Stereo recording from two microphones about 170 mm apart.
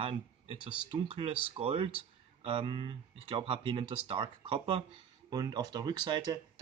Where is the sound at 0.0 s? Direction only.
30° right (ahead or behind).